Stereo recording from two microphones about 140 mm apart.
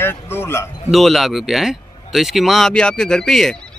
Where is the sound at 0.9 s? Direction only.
Centre (ahead or behind).